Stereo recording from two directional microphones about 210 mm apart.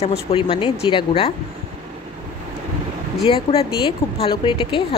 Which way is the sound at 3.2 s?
25° left (ahead or behind).